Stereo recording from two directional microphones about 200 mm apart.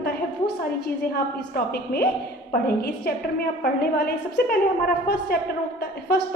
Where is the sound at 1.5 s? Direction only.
50° left (ahead or behind).